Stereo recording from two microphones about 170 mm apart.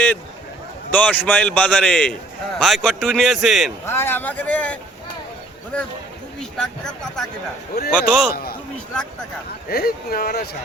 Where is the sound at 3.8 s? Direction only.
15° left (ahead or behind).